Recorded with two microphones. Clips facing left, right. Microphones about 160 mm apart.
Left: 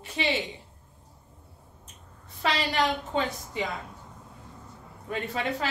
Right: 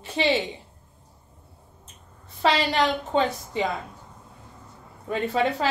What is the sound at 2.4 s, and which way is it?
Speech, 30° right (ahead or behind).